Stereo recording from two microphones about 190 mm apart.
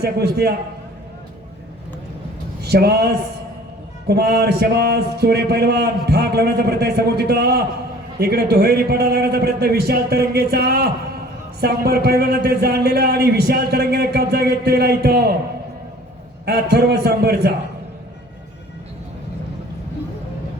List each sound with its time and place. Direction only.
0.0 s a man's voice: 55° right (ahead or behind)
2.6 s a man's voice: 55° right (ahead or behind)
16.5 s a man's voice: 60° right (ahead or behind)